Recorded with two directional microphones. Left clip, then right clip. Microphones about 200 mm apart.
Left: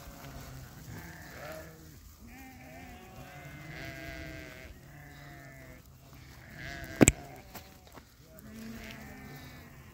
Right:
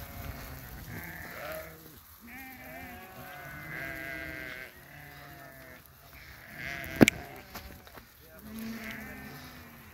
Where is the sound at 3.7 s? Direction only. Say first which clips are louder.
Right 5 dB; centre (ahead or behind).